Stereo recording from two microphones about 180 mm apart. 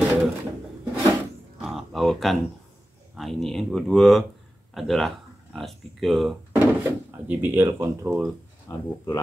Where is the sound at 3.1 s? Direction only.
Centre (ahead or behind).